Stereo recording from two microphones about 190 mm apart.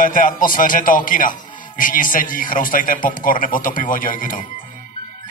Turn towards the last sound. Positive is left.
turn(degrees=45)  # may be behind; listen again after turning